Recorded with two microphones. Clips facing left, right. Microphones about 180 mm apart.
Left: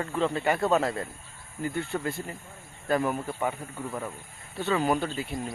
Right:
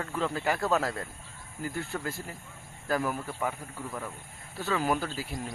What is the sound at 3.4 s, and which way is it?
Speech, 10° left (ahead or behind).